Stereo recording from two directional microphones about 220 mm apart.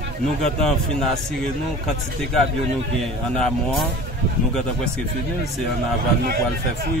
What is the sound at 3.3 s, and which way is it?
Speech, 5° left (ahead or behind).